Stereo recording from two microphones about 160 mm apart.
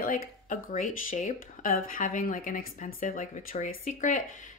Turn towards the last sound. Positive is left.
turn(degrees=55)  # may be behind; listen again after turning